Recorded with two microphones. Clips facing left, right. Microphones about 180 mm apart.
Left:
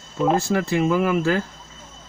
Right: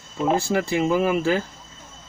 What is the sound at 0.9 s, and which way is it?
Speech, 30° right (ahead or behind).